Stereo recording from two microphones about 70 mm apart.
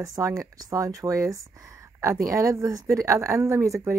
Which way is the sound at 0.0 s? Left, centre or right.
Right.